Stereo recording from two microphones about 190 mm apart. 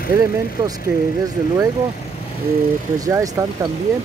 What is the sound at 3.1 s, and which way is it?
Speech, 15° right (ahead or behind).